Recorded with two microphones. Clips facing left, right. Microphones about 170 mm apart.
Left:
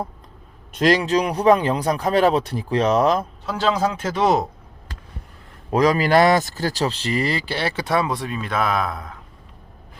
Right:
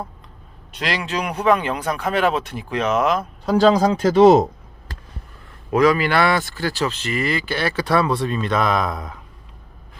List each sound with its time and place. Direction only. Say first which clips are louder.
0.7 s speech: left 8 dB; 45° left (ahead or behind)
3.4 s a man's voice: right 9 dB; 35° right (ahead or behind)
5.7 s speech: even; 40° left (ahead or behind); by 9.1 s centre (ahead or behind)